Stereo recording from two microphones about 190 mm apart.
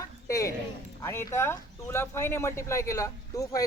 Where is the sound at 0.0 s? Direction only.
15° left (ahead or behind).